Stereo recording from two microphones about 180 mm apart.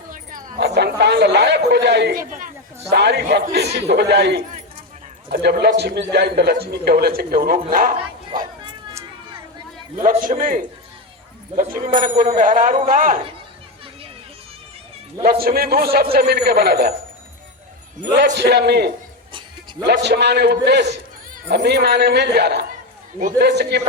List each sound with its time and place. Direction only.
0.1 s bow-wow: 45° right (ahead or behind)
0.6 s a man's voice: 70° right (ahead or behind); by 7.9 s 50° right (ahead or behind)
10.0 s speech: 50° right (ahead or behind)
15.2 s a man's voice: 55° right (ahead or behind)
18.2 s a man's voice: 70° right (ahead or behind)